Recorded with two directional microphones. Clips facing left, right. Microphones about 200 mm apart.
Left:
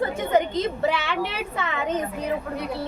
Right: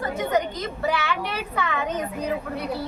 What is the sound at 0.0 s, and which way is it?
A woman's voice, 25° left (ahead or behind).